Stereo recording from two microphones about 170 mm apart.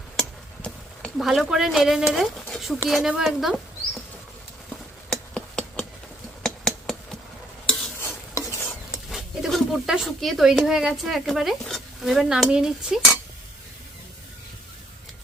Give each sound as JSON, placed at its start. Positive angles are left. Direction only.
{"t": 0.2, "sound": "a sound", "side_deg": 5}
{"t": 2.1, "sound": "speech", "side_deg": 0}
{"t": 5.1, "sound": "hammer", "side_deg": 5}
{"t": 6.4, "sound": "a sound", "side_deg": 0}
{"t": 7.9, "sound": "stir", "side_deg": 15}
{"t": 9.0, "sound": "speech", "side_deg": 0}